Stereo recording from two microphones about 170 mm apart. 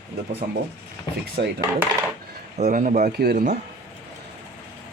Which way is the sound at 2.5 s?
45° right (ahead or behind).